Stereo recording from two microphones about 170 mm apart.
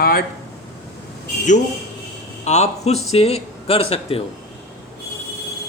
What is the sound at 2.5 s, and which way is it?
Speech, 40° left (ahead or behind).